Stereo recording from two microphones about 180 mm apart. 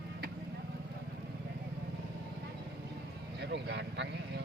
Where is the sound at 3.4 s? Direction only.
75° right (ahead or behind).